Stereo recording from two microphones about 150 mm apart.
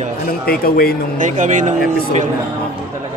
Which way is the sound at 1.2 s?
55° right (ahead or behind).